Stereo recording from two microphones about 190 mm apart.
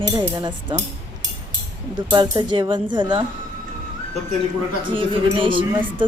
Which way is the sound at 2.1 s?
25° right (ahead or behind).